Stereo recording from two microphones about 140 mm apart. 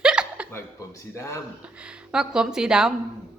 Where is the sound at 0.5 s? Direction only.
20° left (ahead or behind).